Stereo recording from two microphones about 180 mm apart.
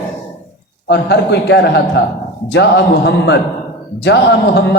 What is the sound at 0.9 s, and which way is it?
A man's voice, 70° left (ahead or behind).